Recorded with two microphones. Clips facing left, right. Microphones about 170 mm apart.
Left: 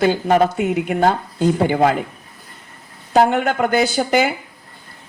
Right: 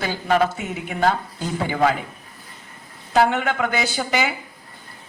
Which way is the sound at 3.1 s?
45° left (ahead or behind).